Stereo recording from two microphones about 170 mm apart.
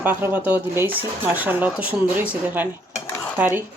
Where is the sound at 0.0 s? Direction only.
10° right (ahead or behind).